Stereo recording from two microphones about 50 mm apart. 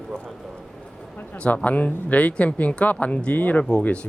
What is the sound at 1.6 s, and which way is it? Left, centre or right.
Speech, left.